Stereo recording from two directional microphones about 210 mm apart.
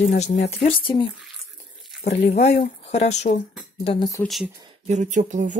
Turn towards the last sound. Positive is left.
turn(degrees=-35)  # may be behind; listen again after turning